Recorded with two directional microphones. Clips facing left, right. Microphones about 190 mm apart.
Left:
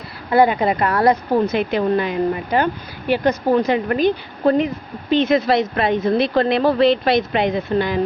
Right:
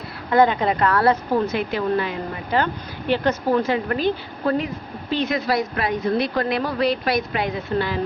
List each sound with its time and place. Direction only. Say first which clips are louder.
0.3 s a woman's voice: left 2 dB; 10° left (ahead or behind)